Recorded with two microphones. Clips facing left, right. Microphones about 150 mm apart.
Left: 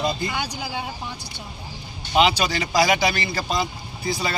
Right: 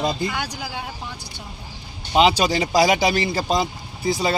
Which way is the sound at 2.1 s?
30° right (ahead or behind).